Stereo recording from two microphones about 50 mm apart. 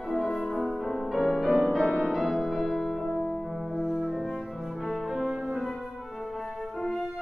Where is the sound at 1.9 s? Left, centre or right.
Centre.